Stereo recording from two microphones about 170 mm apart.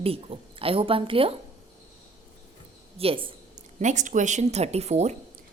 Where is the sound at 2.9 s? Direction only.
35° right (ahead or behind).